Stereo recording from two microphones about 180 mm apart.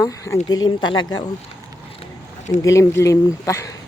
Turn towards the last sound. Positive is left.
turn(degrees=15)  # may be behind; listen again after turning